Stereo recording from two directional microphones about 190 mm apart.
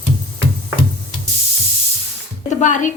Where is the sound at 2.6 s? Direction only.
40° left (ahead or behind).